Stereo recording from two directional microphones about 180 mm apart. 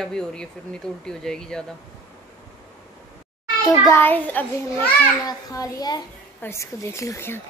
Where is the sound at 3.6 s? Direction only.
15° left (ahead or behind).